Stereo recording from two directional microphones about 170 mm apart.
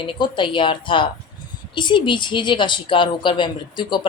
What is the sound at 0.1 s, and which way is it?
Speech, 30° left (ahead or behind).